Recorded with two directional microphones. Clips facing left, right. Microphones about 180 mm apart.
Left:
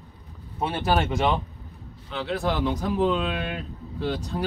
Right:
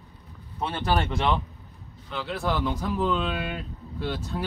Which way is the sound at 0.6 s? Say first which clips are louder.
Left 2 dB; 10° left (ahead or behind).